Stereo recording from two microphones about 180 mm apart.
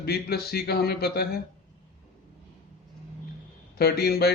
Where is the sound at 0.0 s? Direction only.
60° left (ahead or behind).